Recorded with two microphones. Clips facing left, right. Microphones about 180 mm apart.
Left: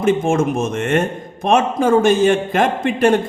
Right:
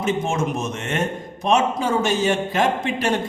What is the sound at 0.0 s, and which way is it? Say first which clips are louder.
A man's voice: left 7 dB; 50° left (ahead or behind).